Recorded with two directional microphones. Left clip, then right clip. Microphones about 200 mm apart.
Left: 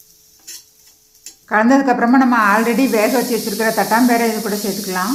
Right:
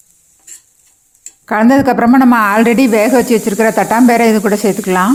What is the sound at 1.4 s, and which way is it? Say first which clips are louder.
Speech: right 3 dB; 45° right (ahead or behind).